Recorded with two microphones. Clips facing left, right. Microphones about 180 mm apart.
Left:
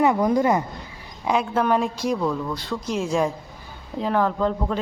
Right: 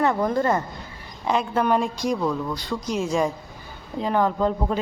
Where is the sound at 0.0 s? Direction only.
15° left (ahead or behind).